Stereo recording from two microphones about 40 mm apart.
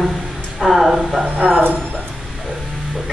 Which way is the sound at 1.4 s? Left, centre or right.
Centre.